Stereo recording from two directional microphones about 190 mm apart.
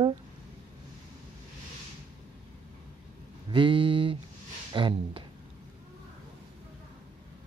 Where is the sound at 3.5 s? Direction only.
25° right (ahead or behind).